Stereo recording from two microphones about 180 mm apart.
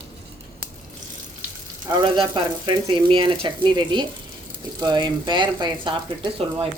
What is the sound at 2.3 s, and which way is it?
Speech, 25° right (ahead or behind).